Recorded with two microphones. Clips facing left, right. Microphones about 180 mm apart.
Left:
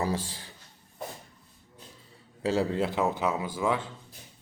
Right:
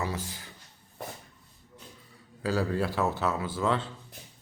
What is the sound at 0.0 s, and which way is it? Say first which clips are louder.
Speech: left 4 dB; 30° left (ahead or behind).